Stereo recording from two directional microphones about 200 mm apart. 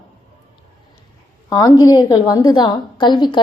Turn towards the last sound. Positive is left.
turn(degrees=20)  # may be behind; listen again after turning